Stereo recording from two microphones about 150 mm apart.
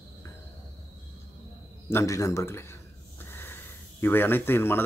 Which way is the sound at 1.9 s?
20° left (ahead or behind).